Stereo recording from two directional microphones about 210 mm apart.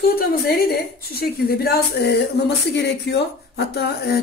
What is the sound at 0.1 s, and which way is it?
Speech, 45° left (ahead or behind).